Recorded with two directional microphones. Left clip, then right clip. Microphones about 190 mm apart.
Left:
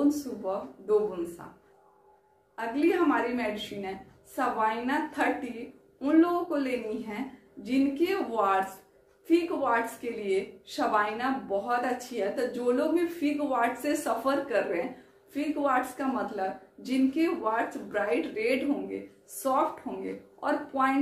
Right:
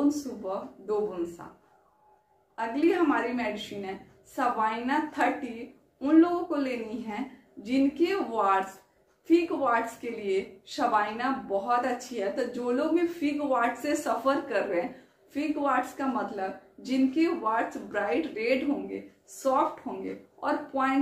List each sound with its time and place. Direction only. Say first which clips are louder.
0.1 s speech: left 1 dB; 15° right (ahead or behind)
2.5 s speech: right 1 dB; 15° right (ahead or behind)